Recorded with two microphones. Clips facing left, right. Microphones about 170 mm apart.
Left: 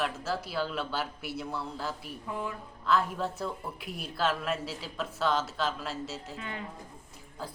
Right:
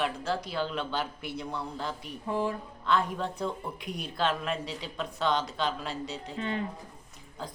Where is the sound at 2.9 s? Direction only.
5° left (ahead or behind).